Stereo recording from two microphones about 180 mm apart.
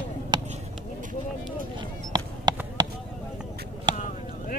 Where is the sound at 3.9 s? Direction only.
25° right (ahead or behind).